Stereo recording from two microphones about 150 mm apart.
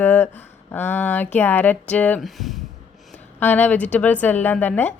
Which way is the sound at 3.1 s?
10° left (ahead or behind).